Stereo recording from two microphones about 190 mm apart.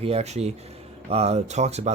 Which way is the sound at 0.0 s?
35° right (ahead or behind).